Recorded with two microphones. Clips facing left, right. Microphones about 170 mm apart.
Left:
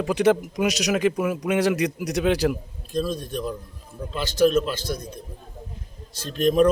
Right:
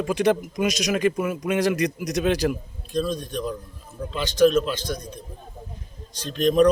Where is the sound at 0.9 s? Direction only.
5° left (ahead or behind).